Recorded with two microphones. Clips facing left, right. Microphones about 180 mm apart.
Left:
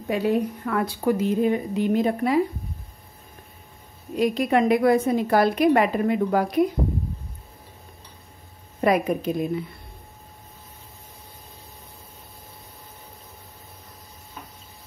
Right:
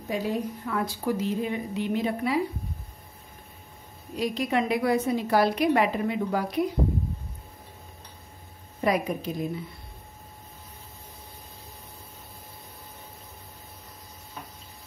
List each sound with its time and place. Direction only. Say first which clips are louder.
0.1 s a woman's voice: left 6 dB; 65° left (ahead or behind); by 2.4 s 45° left (ahead or behind)
4.2 s a woman's voice: left 6 dB; 55° left (ahead or behind)
8.8 s a woman's voice: left 5 dB; 55° left (ahead or behind)